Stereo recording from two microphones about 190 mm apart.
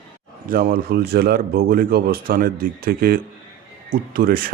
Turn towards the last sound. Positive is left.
turn(degrees=-50)  # may be behind; listen again after turning